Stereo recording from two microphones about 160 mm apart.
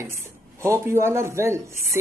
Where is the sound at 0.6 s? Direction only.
20° right (ahead or behind).